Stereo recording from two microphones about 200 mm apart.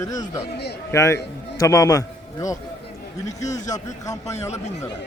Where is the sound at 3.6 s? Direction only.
35° left (ahead or behind).